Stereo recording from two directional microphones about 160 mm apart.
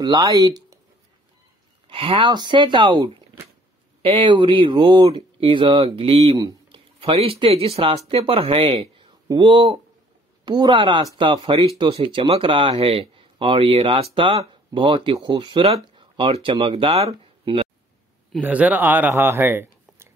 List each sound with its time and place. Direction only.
0.0 s speech: 25° right (ahead or behind)
1.9 s speech: 35° right (ahead or behind)
6.3 s a sound: 20° right (ahead or behind)
7.0 s speech: 35° right (ahead or behind)
18.4 s speech: 10° right (ahead or behind)